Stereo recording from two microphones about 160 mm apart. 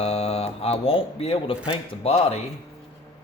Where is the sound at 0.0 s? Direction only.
40° left (ahead or behind).